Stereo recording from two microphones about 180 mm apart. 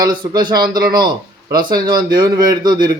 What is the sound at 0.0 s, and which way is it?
A man's voice, 25° right (ahead or behind).